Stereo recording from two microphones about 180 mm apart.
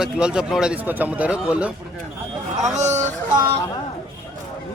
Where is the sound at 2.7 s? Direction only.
40° right (ahead or behind).